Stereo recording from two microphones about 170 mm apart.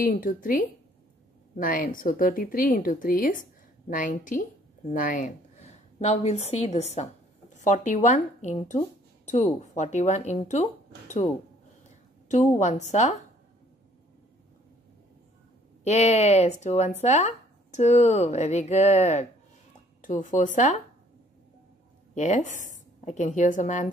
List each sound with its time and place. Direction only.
0.0 s speech: 55° left (ahead or behind)
12.3 s speech: 45° left (ahead or behind)
15.8 s speech: 40° left (ahead or behind)
22.1 s a woman's voice: 45° left (ahead or behind)